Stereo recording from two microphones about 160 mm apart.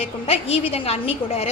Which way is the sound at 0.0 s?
40° left (ahead or behind).